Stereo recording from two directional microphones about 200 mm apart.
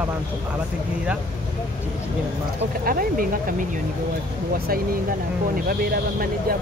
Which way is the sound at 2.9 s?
45° right (ahead or behind).